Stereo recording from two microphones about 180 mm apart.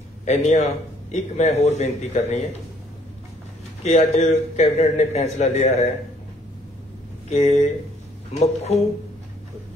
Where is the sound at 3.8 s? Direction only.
35° left (ahead or behind).